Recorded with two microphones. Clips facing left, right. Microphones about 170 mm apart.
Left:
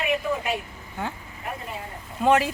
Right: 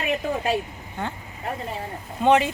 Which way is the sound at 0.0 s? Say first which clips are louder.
Right 1 dB; 35° right (ahead or behind).